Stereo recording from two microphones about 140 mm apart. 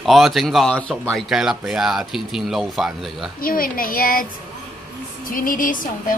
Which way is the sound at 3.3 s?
90° left.